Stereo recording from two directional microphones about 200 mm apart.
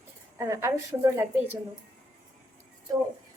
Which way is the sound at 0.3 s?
15° right (ahead or behind).